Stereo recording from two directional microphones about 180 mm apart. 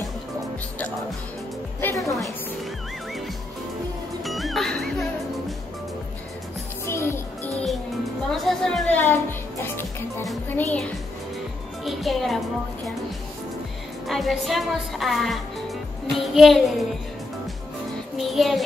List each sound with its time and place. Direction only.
1.8 s a woman's voice: 15° left (ahead or behind)
4.2 s music: centre (ahead or behind)
6.9 s music: 15° left (ahead or behind)
8.2 s music: 5° left (ahead or behind)
14.0 s a woman's voice: centre (ahead or behind)
18.1 s music: centre (ahead or behind)